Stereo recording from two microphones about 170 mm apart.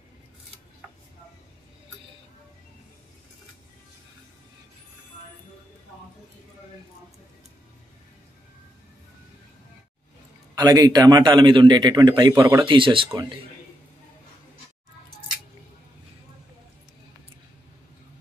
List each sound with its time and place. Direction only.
10.6 s a man's voice: 25° right (ahead or behind)
12.6 s a man's voice: 30° right (ahead or behind)